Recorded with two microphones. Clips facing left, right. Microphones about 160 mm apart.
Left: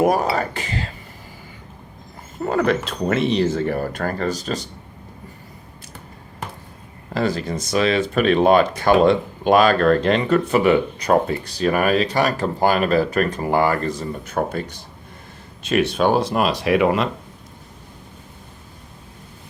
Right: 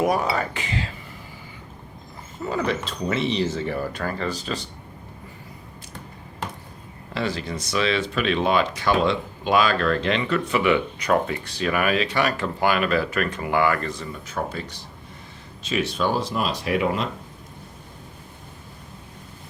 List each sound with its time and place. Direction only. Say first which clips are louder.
0.0 s speech: left 4 dB; 45° left (ahead or behind)
2.4 s speech: left 6 dB; 55° left (ahead or behind)
7.1 s speech: left 5 dB; 45° left (ahead or behind); by 17.1 s 70° left (ahead or behind)